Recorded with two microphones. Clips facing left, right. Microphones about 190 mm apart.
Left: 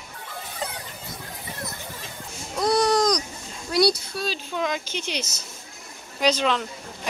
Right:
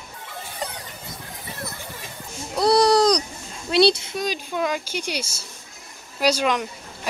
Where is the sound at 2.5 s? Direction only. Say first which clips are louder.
Right 4 dB; 35° right (ahead or behind).